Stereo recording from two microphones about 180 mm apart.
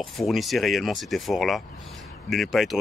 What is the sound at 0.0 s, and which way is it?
Speech, centre (ahead or behind).